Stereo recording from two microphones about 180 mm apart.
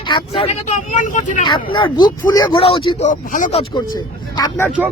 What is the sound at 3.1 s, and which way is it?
Speech, 45° left (ahead or behind).